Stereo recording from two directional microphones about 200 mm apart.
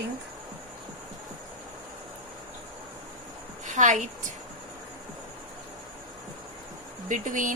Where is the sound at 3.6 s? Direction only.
40° right (ahead or behind).